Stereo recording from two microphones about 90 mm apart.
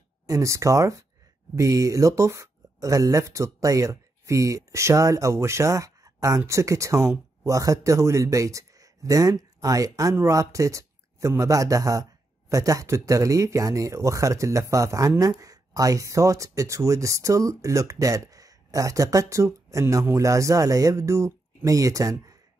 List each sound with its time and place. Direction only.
0.3 s speech: 35° right (ahead or behind)